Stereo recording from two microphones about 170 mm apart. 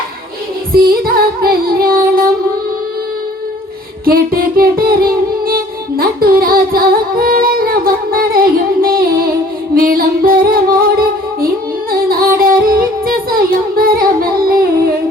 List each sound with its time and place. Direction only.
0.7 s music: 60° right (ahead or behind)
4.0 s music: 60° right (ahead or behind)
11.9 s music: 60° right (ahead or behind)